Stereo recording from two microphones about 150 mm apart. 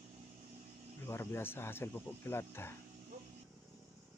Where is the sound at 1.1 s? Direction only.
15° left (ahead or behind).